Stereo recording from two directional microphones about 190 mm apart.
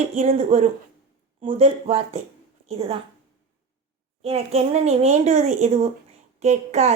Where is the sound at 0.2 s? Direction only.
35° right (ahead or behind).